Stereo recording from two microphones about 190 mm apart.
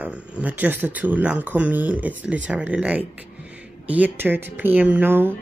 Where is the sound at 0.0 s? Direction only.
10° right (ahead or behind).